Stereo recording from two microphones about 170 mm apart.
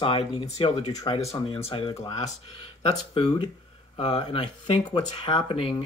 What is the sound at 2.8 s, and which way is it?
Speech, 30° left (ahead or behind).